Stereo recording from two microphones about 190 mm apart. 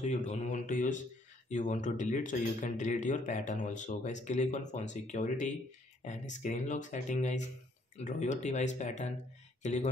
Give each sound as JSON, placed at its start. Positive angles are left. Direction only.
{"t": 0.0, "sound": "speech", "side_deg": 35}